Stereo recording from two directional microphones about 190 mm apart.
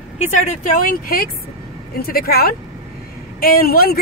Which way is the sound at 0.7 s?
50° left (ahead or behind).